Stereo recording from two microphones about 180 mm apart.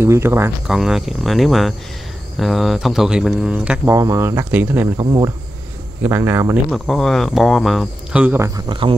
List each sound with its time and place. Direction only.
0.0 s speech: 15° right (ahead or behind)
0.7 s speech: centre (ahead or behind)
4.9 s speech: 20° right (ahead or behind)
6.7 s speech: centre (ahead or behind)
8.5 s speech: 25° right (ahead or behind)